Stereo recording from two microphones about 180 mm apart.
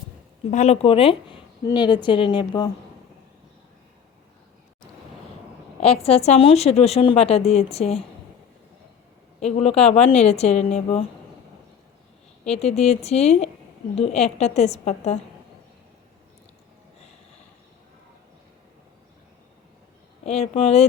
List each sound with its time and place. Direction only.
0.5 s a woman's voice: 40° left (ahead or behind)
5.8 s a woman's voice: 35° left (ahead or behind)
9.4 s a woman's voice: 40° left (ahead or behind)
12.5 s a woman's voice: 35° left (ahead or behind)
20.2 s a woman's voice: 35° left (ahead or behind)